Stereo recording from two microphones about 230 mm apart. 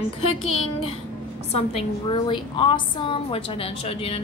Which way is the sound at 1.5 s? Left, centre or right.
Left.